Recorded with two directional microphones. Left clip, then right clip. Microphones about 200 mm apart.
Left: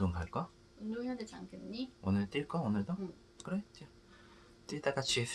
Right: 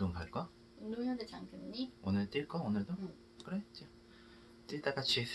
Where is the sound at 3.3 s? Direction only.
25° left (ahead or behind).